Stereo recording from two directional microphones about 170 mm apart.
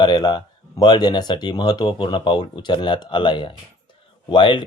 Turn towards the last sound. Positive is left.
turn(degrees=30)  # may be behind; listen again after turning